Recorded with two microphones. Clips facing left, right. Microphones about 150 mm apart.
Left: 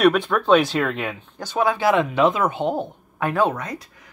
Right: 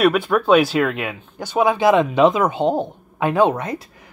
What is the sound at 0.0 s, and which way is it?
Speech, 5° right (ahead or behind).